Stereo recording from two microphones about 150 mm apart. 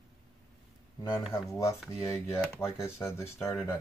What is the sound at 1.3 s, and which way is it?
Speech, 20° left (ahead or behind).